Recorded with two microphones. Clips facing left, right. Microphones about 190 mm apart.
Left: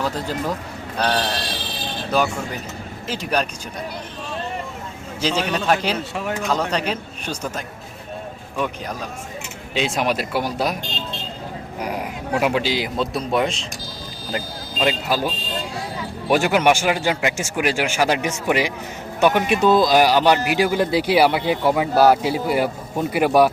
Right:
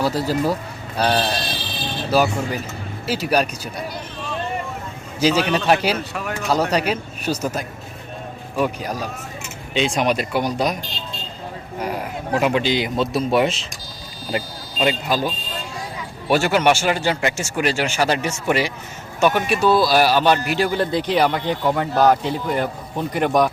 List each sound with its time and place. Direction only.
0.0 s a man's voice: 10° right (ahead or behind)
5.2 s speech: 5° right (ahead or behind)
6.0 s speech: 25° left (ahead or behind)
6.5 s speech: 10° right (ahead or behind)
9.7 s a man's voice: 5° left (ahead or behind)
11.8 s a man's voice: 10° left (ahead or behind)
16.3 s speech: 10° left (ahead or behind)